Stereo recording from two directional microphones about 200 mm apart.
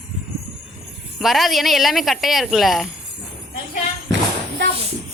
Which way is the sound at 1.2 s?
Centre (ahead or behind).